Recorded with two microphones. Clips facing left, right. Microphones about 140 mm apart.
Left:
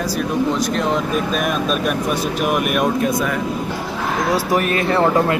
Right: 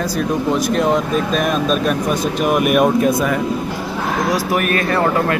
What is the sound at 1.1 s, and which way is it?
Speech, 5° left (ahead or behind).